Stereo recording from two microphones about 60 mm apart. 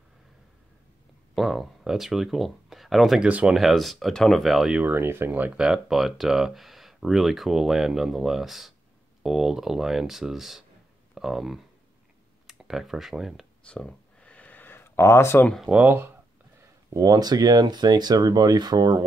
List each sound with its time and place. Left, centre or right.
1.3 s speech: centre
4.8 s speech: right
5.3 s speech: right
5.6 s speech: centre
13.7 s a sound: centre; by 15.4 s left
15.7 s speech: right
16.9 s speech: right